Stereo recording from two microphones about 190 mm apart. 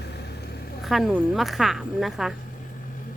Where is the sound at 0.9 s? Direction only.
Centre (ahead or behind).